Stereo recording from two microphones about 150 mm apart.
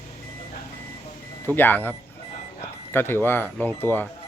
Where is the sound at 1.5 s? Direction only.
15° left (ahead or behind).